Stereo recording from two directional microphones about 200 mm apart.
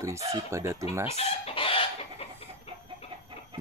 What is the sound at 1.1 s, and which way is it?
Chicken, 30° left (ahead or behind).